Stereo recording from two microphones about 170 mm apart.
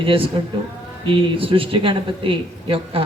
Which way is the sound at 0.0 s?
30° right (ahead or behind).